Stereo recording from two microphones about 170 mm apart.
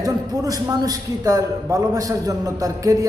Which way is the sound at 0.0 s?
20° right (ahead or behind).